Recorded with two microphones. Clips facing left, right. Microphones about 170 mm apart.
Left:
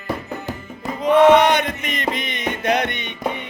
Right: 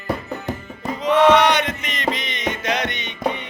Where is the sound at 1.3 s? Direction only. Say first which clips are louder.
Left 2 dB; 50° left (ahead or behind).